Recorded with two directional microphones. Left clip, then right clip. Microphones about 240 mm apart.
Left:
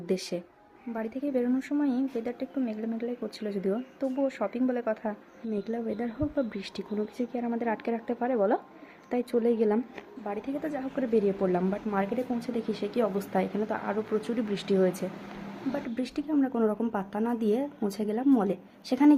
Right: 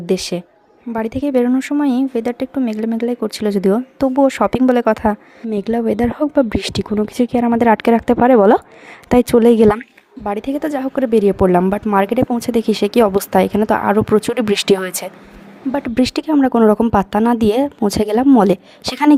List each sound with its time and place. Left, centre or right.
0.0 s speech: right